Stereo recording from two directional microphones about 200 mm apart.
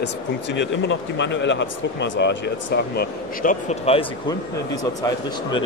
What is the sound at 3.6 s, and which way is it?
Speech, 30° left (ahead or behind).